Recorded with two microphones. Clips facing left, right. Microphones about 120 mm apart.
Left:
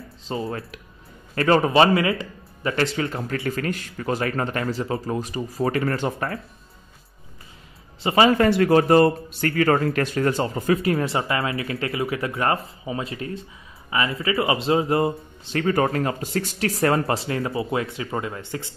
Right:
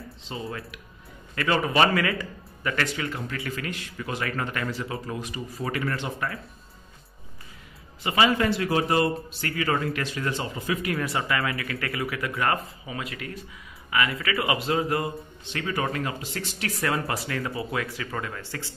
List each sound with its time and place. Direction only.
0.3 s a man's voice: 30° left (ahead or behind)
8.0 s a man's voice: 30° left (ahead or behind)
8.4 s speech: 55° left (ahead or behind); by 18.8 s 20° left (ahead or behind)